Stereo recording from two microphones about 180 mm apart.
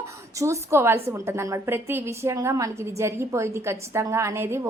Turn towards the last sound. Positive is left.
turn(degrees=-15)  # may be behind; listen again after turning